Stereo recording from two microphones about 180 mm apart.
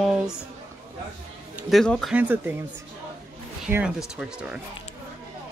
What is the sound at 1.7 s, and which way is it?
Speech, centre (ahead or behind).